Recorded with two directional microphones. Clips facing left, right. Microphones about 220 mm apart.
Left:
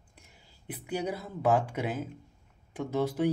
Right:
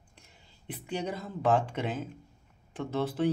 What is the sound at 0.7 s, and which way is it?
Speech, 10° left (ahead or behind).